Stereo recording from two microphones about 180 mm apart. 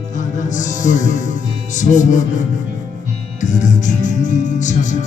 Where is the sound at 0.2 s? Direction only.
45° left (ahead or behind).